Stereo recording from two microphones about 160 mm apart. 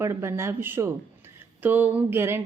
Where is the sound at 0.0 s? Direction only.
15° right (ahead or behind).